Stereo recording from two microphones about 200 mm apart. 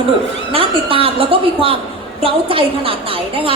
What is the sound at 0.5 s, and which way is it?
A woman's voice, 25° right (ahead or behind).